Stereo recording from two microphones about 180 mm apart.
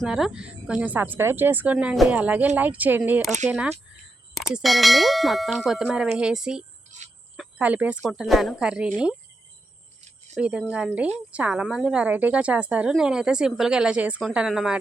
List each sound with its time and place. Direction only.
0.0 s speech: 5° right (ahead or behind)
6.9 s cricket: 40° right (ahead or behind)
7.3 s speech: 10° right (ahead or behind)
10.3 s speech: 5° right (ahead or behind)